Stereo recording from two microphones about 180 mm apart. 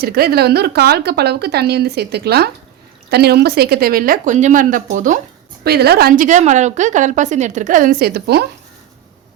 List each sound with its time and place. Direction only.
0.0 s a woman's voice: 60° right (ahead or behind)
5.6 s a woman's voice: 60° right (ahead or behind)